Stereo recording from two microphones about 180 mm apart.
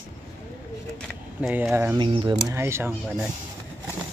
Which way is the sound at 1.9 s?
25° right (ahead or behind).